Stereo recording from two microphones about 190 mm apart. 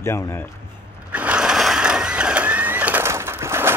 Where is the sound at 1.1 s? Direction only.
5° right (ahead or behind).